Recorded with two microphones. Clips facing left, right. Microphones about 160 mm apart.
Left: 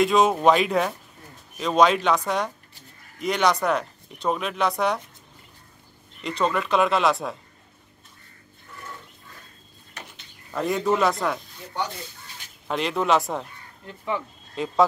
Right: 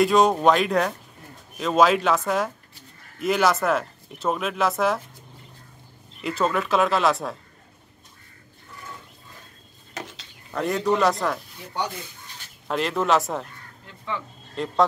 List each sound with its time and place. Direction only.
0.0 s speech: centre (ahead or behind)
6.2 s speech: 5° right (ahead or behind)
9.9 s dishes: 90° right
10.5 s speech: centre (ahead or behind)
12.6 s speech: centre (ahead or behind)
14.5 s speech: centre (ahead or behind)